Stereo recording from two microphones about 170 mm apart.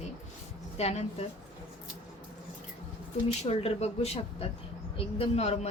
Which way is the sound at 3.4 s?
40° left (ahead or behind).